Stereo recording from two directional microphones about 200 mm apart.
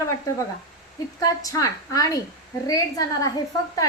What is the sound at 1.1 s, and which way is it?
A woman's voice, 15° left (ahead or behind).